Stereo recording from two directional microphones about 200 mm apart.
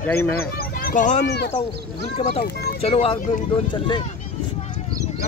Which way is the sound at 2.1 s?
30° left (ahead or behind).